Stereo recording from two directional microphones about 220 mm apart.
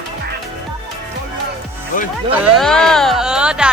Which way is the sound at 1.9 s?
40° left (ahead or behind).